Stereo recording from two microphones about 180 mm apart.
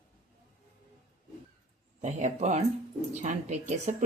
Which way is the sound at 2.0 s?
40° right (ahead or behind).